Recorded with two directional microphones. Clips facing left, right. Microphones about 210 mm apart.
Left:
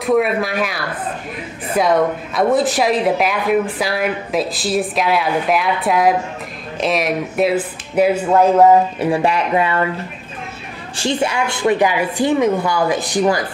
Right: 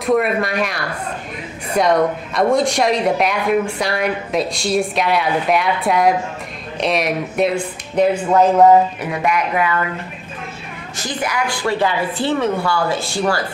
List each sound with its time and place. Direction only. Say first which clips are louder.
0.0 s a woman's voice: left 1 dB; centre (ahead or behind)
9.0 s speech: left 3 dB; 30° left (ahead or behind)
11.0 s a woman's voice: left 4 dB; 25° left (ahead or behind)